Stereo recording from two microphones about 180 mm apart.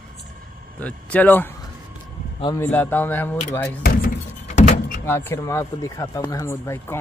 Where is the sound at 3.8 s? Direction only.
55° left (ahead or behind).